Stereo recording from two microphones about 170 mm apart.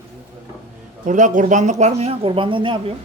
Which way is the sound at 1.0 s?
50° right (ahead or behind).